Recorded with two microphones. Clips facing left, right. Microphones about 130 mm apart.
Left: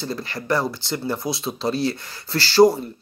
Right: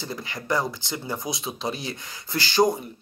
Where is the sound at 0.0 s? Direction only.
20° right (ahead or behind).